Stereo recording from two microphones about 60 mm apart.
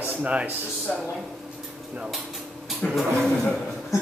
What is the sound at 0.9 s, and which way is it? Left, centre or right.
Speech, left.